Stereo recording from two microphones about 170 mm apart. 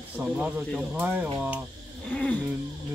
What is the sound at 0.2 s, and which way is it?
Speech, 5° right (ahead or behind).